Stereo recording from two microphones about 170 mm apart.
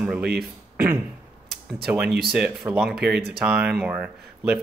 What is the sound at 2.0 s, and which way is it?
Speech, 70° right (ahead or behind).